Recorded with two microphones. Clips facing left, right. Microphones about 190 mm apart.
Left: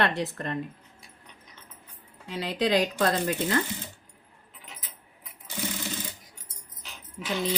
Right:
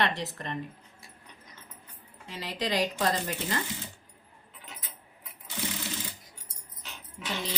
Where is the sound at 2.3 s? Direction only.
55° left (ahead or behind).